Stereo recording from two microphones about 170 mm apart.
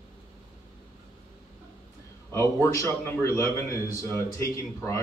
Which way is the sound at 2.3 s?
15° left (ahead or behind).